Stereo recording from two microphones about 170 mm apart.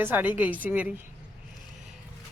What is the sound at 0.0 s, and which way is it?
Speech, 10° right (ahead or behind).